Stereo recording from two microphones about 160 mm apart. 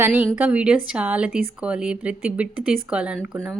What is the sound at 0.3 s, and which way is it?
A woman's voice, 10° right (ahead or behind).